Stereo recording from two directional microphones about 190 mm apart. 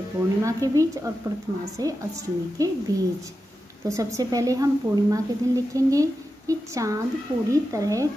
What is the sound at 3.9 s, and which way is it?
A woman's voice, 15° right (ahead or behind).